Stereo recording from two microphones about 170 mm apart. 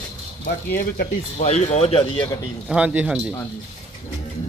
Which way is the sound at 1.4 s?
40° left (ahead or behind).